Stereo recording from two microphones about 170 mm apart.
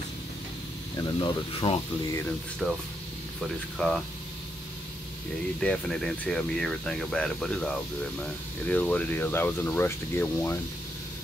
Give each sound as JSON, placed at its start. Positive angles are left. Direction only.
{"t": 0.9, "sound": "speech", "side_deg": 25}
{"t": 2.6, "sound": "speech", "side_deg": 0}
{"t": 5.6, "sound": "speech", "side_deg": 5}